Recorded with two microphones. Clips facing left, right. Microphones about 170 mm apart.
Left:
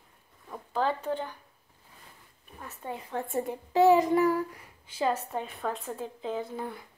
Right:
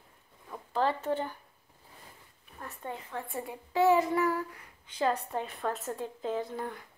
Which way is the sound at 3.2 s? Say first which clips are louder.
Left 7 dB; 45° left (ahead or behind).